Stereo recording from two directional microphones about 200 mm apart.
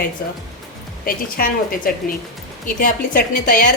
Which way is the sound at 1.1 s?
45° left (ahead or behind).